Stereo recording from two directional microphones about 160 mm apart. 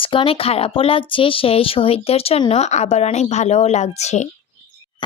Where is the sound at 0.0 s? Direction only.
35° left (ahead or behind).